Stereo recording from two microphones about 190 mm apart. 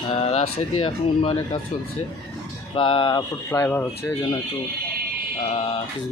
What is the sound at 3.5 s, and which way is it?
Speech, 10° left (ahead or behind).